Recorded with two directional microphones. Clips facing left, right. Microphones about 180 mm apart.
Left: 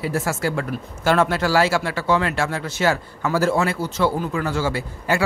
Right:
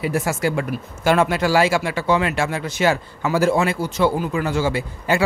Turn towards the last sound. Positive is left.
turn(degrees=-20)  # may be behind; listen again after turning